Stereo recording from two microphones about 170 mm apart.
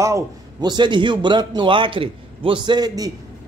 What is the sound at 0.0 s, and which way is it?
A man's voice, 20° right (ahead or behind).